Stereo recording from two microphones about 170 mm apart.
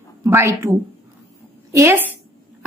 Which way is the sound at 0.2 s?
15° right (ahead or behind).